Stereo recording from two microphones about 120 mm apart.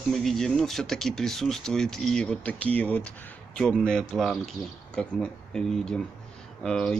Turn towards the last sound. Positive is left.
turn(degrees=5)  # may be behind; listen again after turning